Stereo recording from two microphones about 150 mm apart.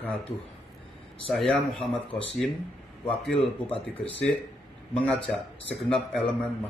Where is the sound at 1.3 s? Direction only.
5° left (ahead or behind).